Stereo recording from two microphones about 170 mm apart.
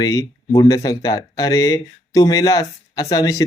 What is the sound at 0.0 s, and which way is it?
Speech, 20° left (ahead or behind).